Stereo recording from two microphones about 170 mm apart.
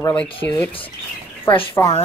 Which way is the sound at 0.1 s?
5° left (ahead or behind).